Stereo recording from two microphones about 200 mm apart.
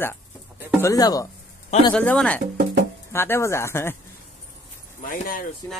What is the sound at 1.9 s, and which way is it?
Speech, 5° left (ahead or behind).